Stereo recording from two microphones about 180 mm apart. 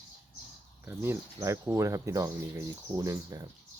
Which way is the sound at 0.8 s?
15° right (ahead or behind).